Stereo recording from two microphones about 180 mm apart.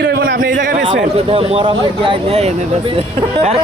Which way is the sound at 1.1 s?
35° right (ahead or behind).